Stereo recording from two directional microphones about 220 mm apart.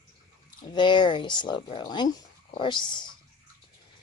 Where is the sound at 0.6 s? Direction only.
20° left (ahead or behind).